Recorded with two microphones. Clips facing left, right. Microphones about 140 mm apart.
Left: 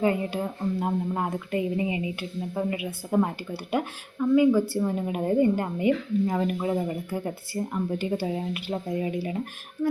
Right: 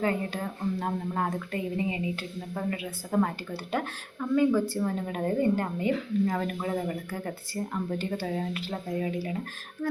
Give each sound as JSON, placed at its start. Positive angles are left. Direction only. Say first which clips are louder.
{"t": 0.0, "sound": "a woman's voice", "louder": "left 4 dB", "side_deg": 15}